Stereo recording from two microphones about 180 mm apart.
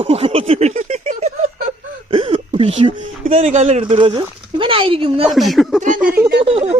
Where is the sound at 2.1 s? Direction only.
30° right (ahead or behind).